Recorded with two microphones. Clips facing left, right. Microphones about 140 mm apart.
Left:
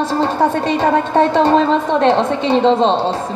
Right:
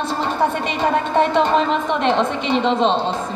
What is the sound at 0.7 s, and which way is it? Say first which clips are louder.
A woman's voice: left 4 dB; 40° left (ahead or behind).